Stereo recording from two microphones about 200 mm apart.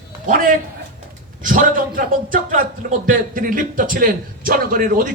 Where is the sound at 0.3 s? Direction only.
45° right (ahead or behind).